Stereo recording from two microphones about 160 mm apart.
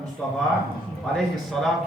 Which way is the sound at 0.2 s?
5° left (ahead or behind).